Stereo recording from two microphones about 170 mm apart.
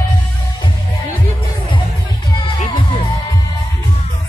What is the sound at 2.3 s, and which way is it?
Music, 25° left (ahead or behind).